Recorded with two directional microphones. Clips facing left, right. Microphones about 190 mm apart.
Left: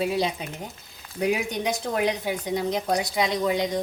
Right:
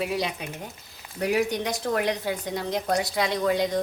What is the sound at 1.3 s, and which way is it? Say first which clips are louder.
A woman's voice: right 2 dB; 15° left (ahead or behind).